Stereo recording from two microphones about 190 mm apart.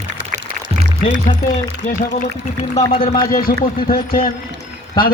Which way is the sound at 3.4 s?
50° left (ahead or behind).